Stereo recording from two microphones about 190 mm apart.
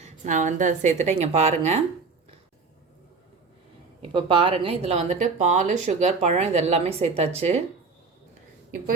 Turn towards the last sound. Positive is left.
turn(degrees=-35)  # may be behind; listen again after turning